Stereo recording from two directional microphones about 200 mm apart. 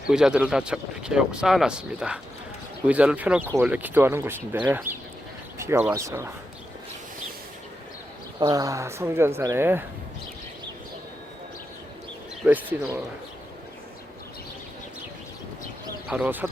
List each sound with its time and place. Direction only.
0.1 s speech: 5° right (ahead or behind)
8.4 s speech: 20° right (ahead or behind)
12.4 s speech: 10° right (ahead or behind)
16.0 s speech: 5° right (ahead or behind)